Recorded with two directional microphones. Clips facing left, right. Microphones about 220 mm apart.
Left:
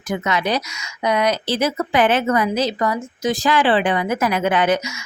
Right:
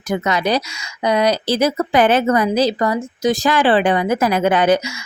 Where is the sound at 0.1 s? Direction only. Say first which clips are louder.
Right 3 dB; 35° right (ahead or behind).